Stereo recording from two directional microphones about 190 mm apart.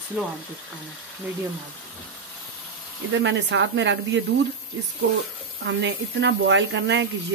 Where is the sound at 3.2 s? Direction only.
75° right (ahead or behind).